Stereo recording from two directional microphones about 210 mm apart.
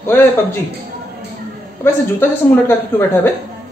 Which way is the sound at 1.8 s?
10° left (ahead or behind).